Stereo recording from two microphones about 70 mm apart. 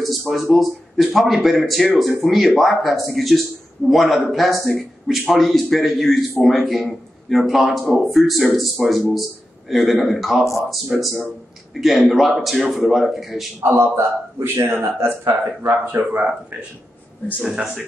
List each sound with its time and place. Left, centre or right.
0.2 s a man's voice: centre
13.6 s a man's voice: right
15.9 s speech: right
17.4 s a man's voice: centre